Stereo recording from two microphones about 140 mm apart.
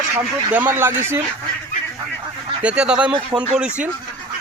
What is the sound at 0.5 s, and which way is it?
Speech, 15° right (ahead or behind).